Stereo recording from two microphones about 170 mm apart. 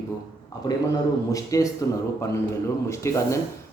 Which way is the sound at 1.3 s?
20° left (ahead or behind).